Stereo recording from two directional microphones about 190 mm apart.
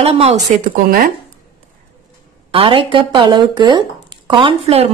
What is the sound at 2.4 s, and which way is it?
Speech, 30° right (ahead or behind).